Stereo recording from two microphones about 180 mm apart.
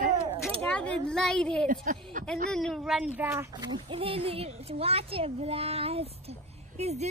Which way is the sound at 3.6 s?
25° right (ahead or behind).